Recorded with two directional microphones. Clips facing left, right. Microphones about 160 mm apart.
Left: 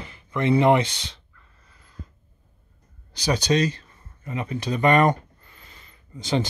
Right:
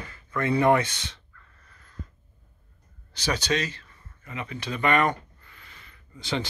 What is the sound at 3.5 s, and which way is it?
Speech, 40° left (ahead or behind).